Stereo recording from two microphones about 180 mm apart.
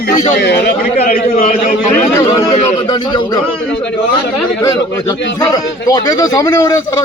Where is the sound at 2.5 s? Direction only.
30° left (ahead or behind).